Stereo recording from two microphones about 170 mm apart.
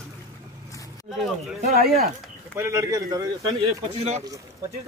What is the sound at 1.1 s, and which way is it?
Speech, centre (ahead or behind).